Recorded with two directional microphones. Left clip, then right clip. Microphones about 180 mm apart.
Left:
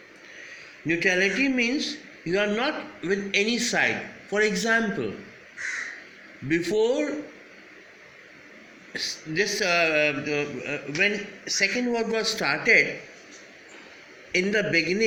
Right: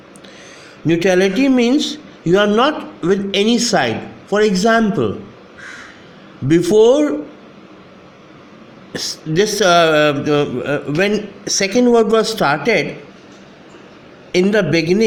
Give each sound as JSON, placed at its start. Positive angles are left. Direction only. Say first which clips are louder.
{"t": 0.9, "sound": "speech", "louder": "right 9 dB", "side_deg": -50}
{"t": 6.5, "sound": "speech", "louder": "right 13 dB", "side_deg": -55}
{"t": 8.9, "sound": "speech", "louder": "right 8 dB", "side_deg": -55}
{"t": 14.3, "sound": "speech", "louder": "right 8 dB", "side_deg": -45}